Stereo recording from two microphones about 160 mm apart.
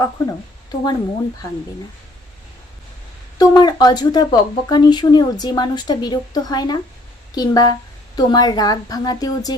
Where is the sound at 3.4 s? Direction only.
25° left (ahead or behind).